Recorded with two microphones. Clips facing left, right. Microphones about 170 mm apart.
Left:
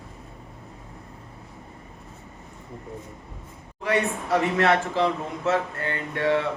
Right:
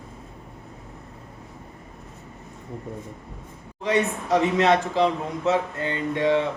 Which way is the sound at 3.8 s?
20° right (ahead or behind).